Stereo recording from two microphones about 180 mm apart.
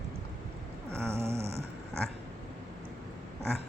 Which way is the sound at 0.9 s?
15° right (ahead or behind).